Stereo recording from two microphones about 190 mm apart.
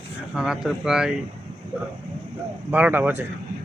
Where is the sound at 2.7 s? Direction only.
10° right (ahead or behind).